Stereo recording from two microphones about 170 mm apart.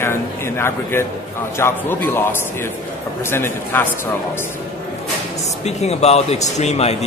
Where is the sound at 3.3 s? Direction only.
15° left (ahead or behind).